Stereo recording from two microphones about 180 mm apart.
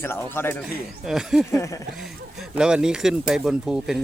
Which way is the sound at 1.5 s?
15° left (ahead or behind).